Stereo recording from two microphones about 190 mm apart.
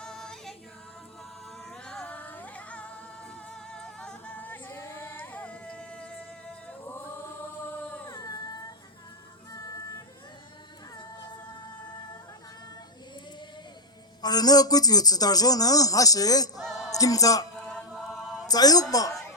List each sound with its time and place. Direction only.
0.0 s music: 5° left (ahead or behind)
1.7 s a sound: 5° left (ahead or behind)
3.7 s music: 5° left (ahead or behind)
7.9 s music: 10° left (ahead or behind)
8.1 s a sound: 20° left (ahead or behind)
9.5 s music: 20° left (ahead or behind)
14.2 s a man's voice: 20° left (ahead or behind)
16.6 s music: centre (ahead or behind)
16.9 s a man's voice: 20° left (ahead or behind)
17.6 s chant: 5° left (ahead or behind)
18.4 s a woman's voice: 20° left (ahead or behind)